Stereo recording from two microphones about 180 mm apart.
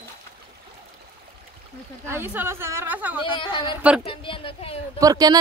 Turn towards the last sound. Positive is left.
turn(degrees=-20)  # may be behind; listen again after turning